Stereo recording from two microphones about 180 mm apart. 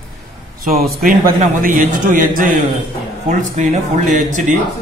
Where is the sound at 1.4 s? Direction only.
50° right (ahead or behind).